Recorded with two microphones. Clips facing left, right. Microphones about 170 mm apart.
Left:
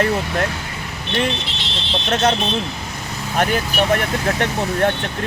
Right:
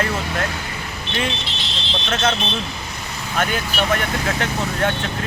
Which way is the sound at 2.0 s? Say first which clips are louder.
Left 3 dB; 40° left (ahead or behind).